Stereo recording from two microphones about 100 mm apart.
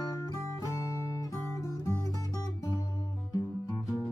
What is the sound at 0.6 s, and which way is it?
Music, 35° left (ahead or behind).